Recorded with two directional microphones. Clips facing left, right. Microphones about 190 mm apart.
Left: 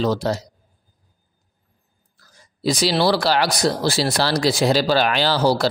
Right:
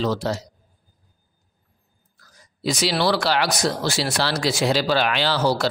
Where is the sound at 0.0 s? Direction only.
40° left (ahead or behind).